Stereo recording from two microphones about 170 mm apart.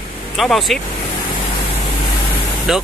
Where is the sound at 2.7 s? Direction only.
5° right (ahead or behind).